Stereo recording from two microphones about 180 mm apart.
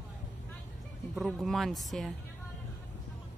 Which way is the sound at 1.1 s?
Centre (ahead or behind).